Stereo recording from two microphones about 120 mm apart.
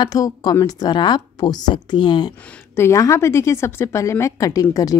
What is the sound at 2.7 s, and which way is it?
A woman's voice, 25° left (ahead or behind).